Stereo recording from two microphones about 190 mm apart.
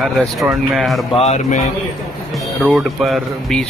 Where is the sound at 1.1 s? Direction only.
35° left (ahead or behind).